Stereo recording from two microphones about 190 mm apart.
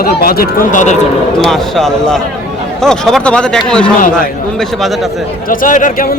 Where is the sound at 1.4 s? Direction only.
Centre (ahead or behind).